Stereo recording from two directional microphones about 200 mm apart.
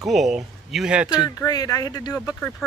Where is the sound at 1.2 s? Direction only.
20° left (ahead or behind).